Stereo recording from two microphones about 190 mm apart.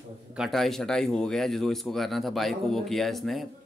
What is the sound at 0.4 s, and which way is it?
Speech, centre (ahead or behind).